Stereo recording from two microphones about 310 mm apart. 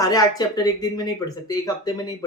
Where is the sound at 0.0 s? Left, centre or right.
Centre.